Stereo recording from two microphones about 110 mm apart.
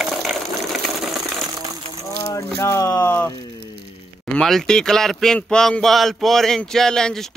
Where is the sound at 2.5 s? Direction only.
25° left (ahead or behind).